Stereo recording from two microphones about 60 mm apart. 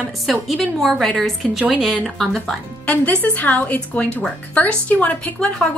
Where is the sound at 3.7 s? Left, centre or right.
Centre.